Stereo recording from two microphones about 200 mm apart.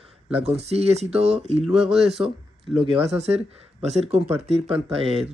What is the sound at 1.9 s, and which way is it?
Speech, centre (ahead or behind).